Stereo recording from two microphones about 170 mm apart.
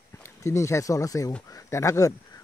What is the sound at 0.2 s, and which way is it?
Speech, 15° left (ahead or behind).